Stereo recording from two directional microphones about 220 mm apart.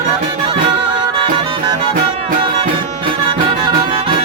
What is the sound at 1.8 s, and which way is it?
Music, 25° right (ahead or behind).